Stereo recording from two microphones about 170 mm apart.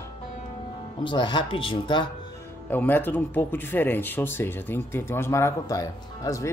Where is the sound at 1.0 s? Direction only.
25° left (ahead or behind).